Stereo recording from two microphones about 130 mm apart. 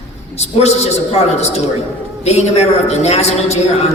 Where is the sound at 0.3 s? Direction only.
55° left (ahead or behind).